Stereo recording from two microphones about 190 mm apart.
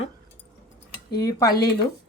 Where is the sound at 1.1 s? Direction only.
20° left (ahead or behind).